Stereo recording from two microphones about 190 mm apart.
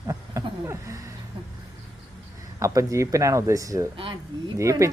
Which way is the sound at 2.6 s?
15° right (ahead or behind).